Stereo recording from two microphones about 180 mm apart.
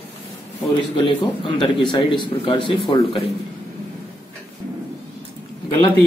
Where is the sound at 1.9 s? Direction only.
25° left (ahead or behind).